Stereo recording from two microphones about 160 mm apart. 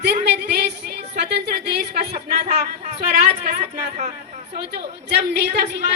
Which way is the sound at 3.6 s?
45° right (ahead or behind).